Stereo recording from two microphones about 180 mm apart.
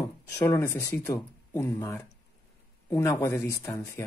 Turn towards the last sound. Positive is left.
turn(degrees=15)  # may be behind; listen again after turning